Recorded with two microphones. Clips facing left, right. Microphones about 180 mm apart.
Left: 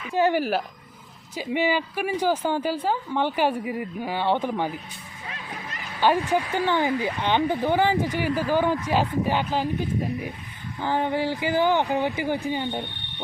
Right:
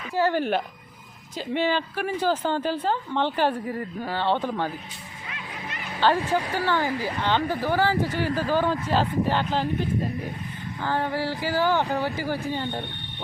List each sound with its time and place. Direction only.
0.1 s speech: 15° left (ahead or behind)
6.0 s speech: 15° left (ahead or behind)